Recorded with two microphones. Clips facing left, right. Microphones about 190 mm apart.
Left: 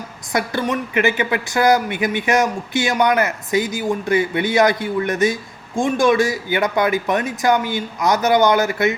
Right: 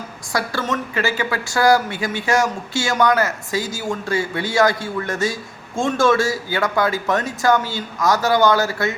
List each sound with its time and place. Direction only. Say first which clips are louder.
0.3 s speech: left 2 dB; 15° left (ahead or behind)